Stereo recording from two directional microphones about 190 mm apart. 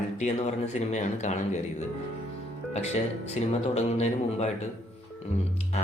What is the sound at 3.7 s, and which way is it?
Speech, 35° left (ahead or behind).